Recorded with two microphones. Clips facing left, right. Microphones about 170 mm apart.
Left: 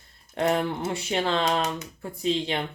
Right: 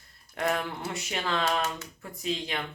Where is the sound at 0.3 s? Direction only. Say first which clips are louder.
Left 5 dB; 25° left (ahead or behind).